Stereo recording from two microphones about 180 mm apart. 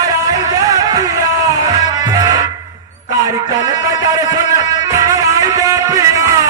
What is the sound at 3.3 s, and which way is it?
Speech, 20° right (ahead or behind).